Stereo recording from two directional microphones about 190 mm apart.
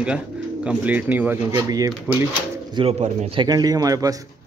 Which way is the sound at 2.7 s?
30° right (ahead or behind).